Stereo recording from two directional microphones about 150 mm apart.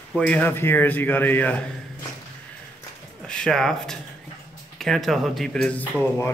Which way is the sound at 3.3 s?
5° left (ahead or behind).